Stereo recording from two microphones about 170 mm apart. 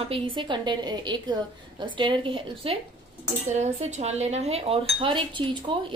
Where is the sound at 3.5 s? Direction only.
40° right (ahead or behind).